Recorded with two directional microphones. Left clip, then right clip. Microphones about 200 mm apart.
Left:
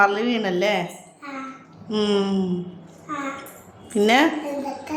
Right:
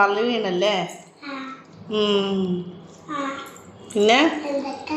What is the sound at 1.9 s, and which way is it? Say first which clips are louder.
Speech: right 1 dB; 30° left (ahead or behind).